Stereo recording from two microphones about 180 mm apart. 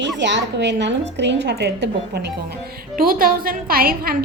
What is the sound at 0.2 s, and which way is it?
A woman's voice, 85° right.